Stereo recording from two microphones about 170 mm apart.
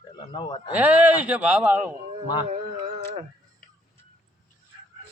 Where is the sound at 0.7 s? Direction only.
10° right (ahead or behind).